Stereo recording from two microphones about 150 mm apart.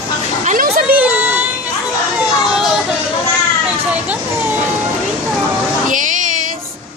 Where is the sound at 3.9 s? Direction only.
10° right (ahead or behind).